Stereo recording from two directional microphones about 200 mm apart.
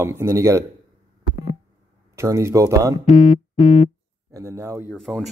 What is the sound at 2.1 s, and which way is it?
Speech, 15° right (ahead or behind).